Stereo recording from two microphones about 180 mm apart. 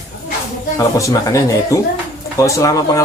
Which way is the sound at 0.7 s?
15° left (ahead or behind).